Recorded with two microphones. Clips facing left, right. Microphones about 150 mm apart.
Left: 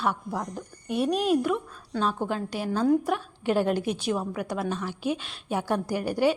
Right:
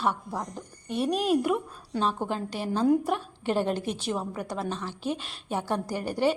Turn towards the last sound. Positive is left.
turn(degrees=5)  # may be behind; listen again after turning